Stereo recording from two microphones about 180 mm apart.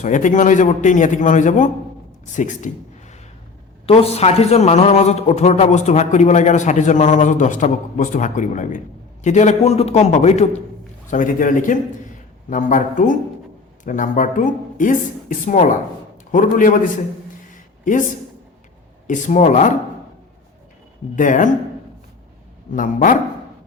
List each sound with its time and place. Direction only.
0.0 s speech: 45° left (ahead or behind)
3.8 s a man's voice: 35° left (ahead or behind)
17.5 s a sound: 45° left (ahead or behind)
19.0 s speech: 45° left (ahead or behind)
21.2 s speech: 45° left (ahead or behind)
22.7 s speech: 45° left (ahead or behind)